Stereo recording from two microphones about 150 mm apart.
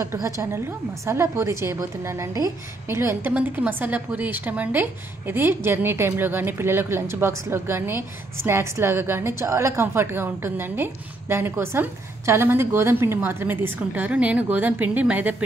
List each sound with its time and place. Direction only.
0.0 s a woman's voice: 20° right (ahead or behind)